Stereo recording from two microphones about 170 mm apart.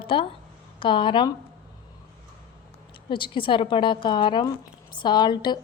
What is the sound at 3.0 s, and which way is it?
A woman's voice, 30° left (ahead or behind).